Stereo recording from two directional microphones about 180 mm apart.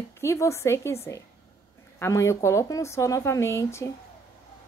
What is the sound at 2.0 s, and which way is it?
A woman's voice, 15° left (ahead or behind).